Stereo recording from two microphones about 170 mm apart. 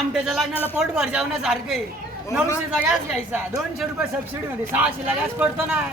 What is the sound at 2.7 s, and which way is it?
A woman's voice, 10° right (ahead or behind).